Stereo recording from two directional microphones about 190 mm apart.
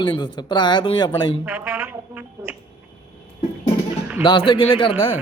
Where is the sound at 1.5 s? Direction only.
10° right (ahead or behind).